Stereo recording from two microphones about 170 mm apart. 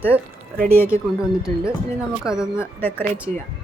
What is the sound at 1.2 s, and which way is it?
Speech, 5° right (ahead or behind).